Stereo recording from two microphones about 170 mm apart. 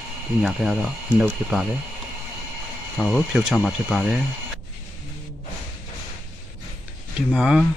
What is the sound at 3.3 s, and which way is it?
Speech, 5° right (ahead or behind).